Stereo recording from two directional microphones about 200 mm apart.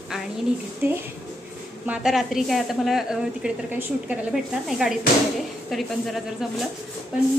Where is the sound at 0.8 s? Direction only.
10° right (ahead or behind).